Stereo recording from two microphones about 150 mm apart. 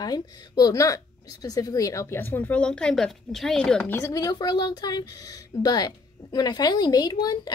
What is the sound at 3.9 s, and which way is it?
A woman's voice, 20° left (ahead or behind).